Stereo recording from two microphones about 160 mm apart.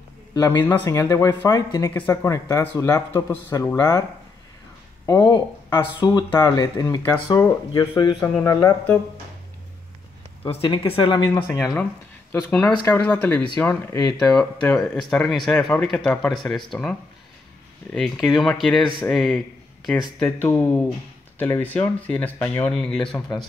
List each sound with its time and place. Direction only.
0.3 s speech: 20° left (ahead or behind)
5.0 s speech: 20° left (ahead or behind)
10.4 s speech: 35° left (ahead or behind)
11.4 s speech: 5° left (ahead or behind)
13.8 s speech: 25° left (ahead or behind)
14.4 s speech: 5° left (ahead or behind)
17.9 s speech: centre (ahead or behind)
20.2 s speech: 10° left (ahead or behind)
23.1 s speech: 25° left (ahead or behind)